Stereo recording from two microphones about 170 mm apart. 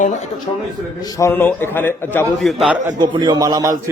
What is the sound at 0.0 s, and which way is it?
Speech, 45° left (ahead or behind).